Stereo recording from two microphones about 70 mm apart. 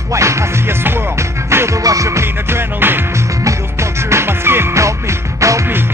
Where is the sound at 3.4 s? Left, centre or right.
Right.